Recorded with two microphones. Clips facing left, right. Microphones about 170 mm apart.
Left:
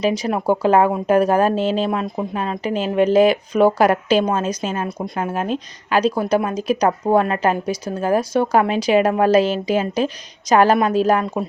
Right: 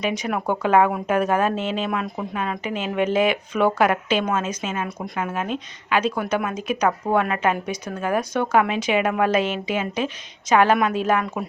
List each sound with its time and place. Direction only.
0.0 s speech: 30° left (ahead or behind)